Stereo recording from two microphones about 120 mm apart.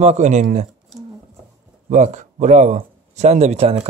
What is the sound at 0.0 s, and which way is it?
Speech, 70° right (ahead or behind).